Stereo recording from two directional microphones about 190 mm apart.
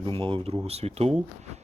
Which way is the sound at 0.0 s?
25° right (ahead or behind).